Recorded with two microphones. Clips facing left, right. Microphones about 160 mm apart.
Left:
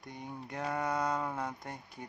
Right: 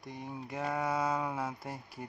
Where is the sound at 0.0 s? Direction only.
Centre (ahead or behind).